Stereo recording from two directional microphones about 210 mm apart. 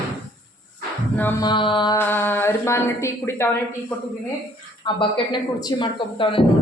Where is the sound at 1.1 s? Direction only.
10° left (ahead or behind).